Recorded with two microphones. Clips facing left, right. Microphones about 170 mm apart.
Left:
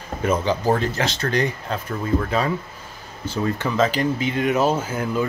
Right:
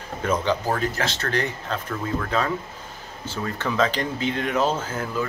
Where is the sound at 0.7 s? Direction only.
20° left (ahead or behind).